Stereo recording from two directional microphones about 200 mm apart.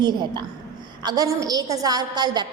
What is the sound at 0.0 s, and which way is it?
A woman's voice, 20° right (ahead or behind).